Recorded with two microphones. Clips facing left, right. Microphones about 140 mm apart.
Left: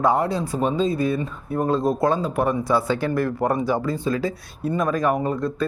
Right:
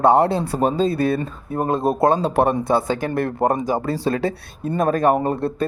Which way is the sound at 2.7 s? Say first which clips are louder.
Right 1 dB; 20° right (ahead or behind).